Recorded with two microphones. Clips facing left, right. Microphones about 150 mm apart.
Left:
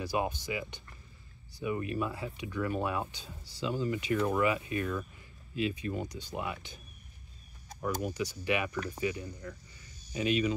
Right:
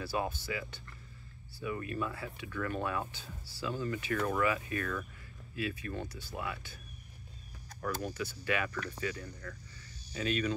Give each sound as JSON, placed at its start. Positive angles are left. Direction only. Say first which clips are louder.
{"t": 0.0, "sound": "speech", "louder": "left 3 dB", "side_deg": 15}
{"t": 7.8, "sound": "speech", "louder": "left 3 dB", "side_deg": 15}
{"t": 8.7, "sound": "speech", "louder": "left 4 dB", "side_deg": 30}
{"t": 9.0, "sound": "speech", "louder": "left 4 dB", "side_deg": 15}